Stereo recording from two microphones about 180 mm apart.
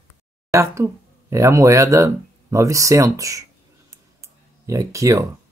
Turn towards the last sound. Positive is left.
turn(degrees=-20)  # may be behind; listen again after turning